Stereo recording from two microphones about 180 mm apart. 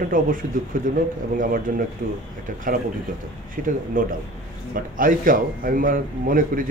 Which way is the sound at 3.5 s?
50° right (ahead or behind).